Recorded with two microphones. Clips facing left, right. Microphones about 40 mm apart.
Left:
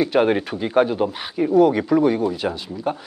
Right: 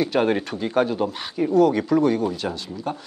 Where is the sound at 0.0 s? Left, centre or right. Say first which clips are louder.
Left 3 dB; centre.